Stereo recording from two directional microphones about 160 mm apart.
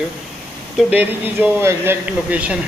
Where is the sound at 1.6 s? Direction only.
15° right (ahead or behind).